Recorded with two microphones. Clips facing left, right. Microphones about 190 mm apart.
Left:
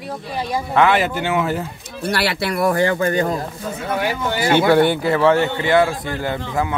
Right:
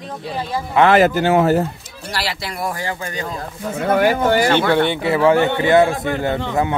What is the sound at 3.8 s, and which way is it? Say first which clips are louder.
Speech: right 7 dB; 50° right (ahead or behind).